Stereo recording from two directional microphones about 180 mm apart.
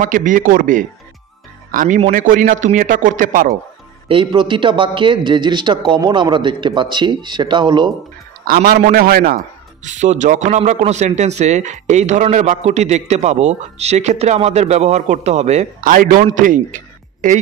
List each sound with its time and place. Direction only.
0.0 s a man's voice: 45° right (ahead or behind)
4.1 s a man's voice: 30° right (ahead or behind)
8.5 s a man's voice: 55° right (ahead or behind)
9.8 s a man's voice: 40° right (ahead or behind)